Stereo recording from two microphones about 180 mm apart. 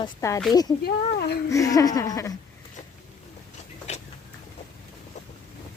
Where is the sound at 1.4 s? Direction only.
20° left (ahead or behind).